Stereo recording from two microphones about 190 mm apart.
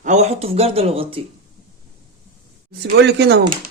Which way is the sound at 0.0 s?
35° right (ahead or behind).